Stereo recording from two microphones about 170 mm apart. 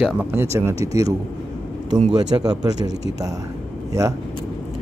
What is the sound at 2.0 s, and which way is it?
Speech, 30° right (ahead or behind).